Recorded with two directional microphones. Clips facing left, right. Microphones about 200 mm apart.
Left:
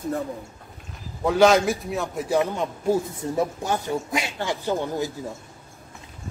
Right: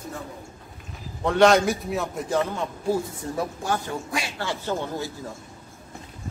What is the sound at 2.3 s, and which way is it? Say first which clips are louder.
A man's voice: left 4 dB; 15° left (ahead or behind).